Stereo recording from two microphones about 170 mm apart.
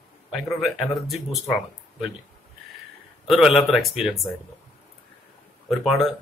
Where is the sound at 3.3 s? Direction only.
Centre (ahead or behind).